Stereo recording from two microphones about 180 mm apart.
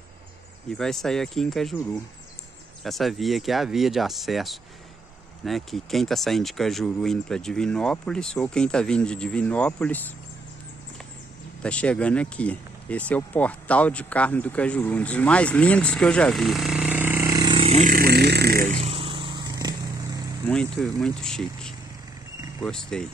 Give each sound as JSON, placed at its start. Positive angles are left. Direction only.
{"t": 0.7, "sound": "speech", "side_deg": 5}
{"t": 2.8, "sound": "speech", "side_deg": 0}
{"t": 11.6, "sound": "speech", "side_deg": 5}
{"t": 17.8, "sound": "a sound", "side_deg": -55}
{"t": 18.7, "sound": "vehicle", "side_deg": -35}
{"t": 20.4, "sound": "speech", "side_deg": 5}